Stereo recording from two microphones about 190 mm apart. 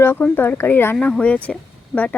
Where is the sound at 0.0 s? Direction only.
10° left (ahead or behind).